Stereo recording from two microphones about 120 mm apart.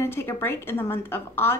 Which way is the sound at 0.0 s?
20° left (ahead or behind).